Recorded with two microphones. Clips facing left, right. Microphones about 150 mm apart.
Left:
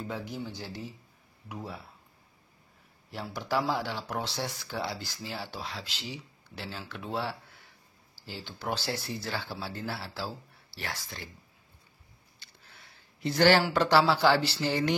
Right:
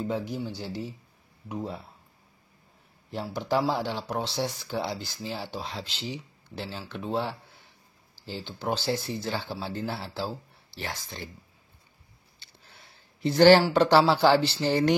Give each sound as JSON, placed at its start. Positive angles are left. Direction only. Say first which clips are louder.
{"t": 0.6, "sound": "speech", "louder": "right 5 dB", "side_deg": -20}
{"t": 3.1, "sound": "speech", "louder": "right 4 dB", "side_deg": -25}
{"t": 12.4, "sound": "a sound", "louder": "right 2 dB", "side_deg": -30}
{"t": 13.2, "sound": "speech", "louder": "right 6 dB", "side_deg": -30}